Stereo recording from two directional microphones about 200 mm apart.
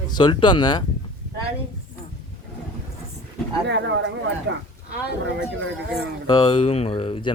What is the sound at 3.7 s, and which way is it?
Speech, 60° right (ahead or behind).